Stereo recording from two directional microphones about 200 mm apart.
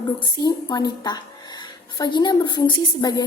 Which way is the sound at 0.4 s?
20° left (ahead or behind).